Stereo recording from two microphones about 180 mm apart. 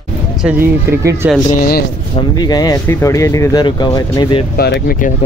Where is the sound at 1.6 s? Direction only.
55° left (ahead or behind).